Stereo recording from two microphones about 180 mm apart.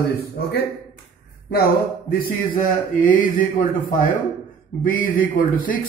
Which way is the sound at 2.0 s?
55° left (ahead or behind).